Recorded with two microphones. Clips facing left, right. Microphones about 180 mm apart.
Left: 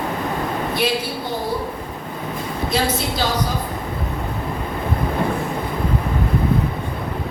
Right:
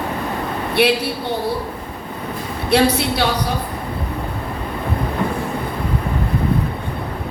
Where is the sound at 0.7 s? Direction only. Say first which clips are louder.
Right 8 dB; 65° right (ahead or behind).